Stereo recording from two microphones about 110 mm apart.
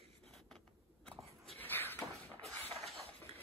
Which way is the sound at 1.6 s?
20° left (ahead or behind).